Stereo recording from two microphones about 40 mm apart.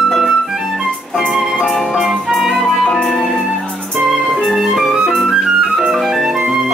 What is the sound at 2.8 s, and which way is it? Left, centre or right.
Music, centre.